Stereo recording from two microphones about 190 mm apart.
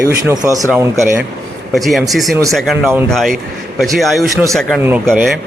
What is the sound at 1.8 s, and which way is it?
Speech, centre (ahead or behind).